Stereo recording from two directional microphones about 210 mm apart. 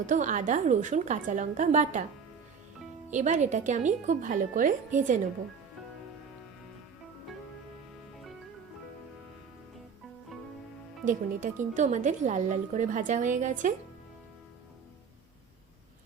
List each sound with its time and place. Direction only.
0.0 s a woman's voice: 40° right (ahead or behind)
3.1 s a woman's voice: 35° right (ahead or behind)
11.0 s a woman's voice: 40° right (ahead or behind)